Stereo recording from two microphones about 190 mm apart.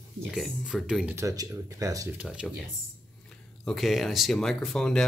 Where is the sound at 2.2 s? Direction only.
Centre (ahead or behind).